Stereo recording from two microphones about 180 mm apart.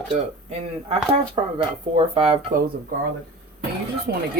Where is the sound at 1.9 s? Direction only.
30° right (ahead or behind).